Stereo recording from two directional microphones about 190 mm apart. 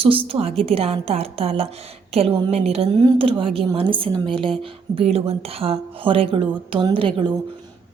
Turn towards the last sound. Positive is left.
turn(degrees=-25)  # may be behind; listen again after turning